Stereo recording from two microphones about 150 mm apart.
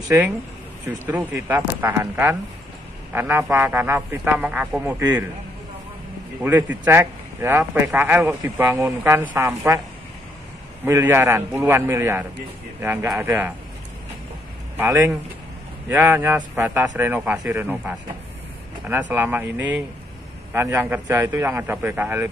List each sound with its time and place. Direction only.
1.0 s speech: 10° right (ahead or behind)
6.4 s speech: 10° right (ahead or behind)
10.9 s speech: 15° right (ahead or behind)
14.8 s speech: 15° right (ahead or behind)